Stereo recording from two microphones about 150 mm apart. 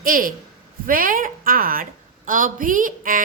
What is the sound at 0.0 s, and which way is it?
A woman's voice, 70° right (ahead or behind).